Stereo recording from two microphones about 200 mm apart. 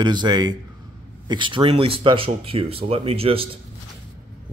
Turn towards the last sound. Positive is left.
turn(degrees=-30)  # may be behind; listen again after turning